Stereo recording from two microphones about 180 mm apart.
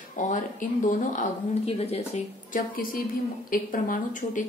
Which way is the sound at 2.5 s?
55° left (ahead or behind).